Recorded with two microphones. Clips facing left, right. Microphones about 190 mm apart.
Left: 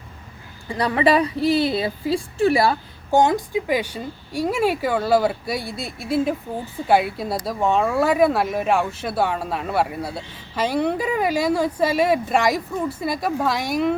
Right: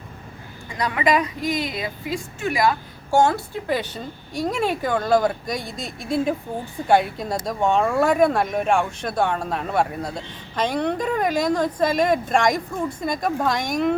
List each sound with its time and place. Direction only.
0.7 s a woman's voice: 30° left (ahead or behind)
3.1 s speech: 15° left (ahead or behind)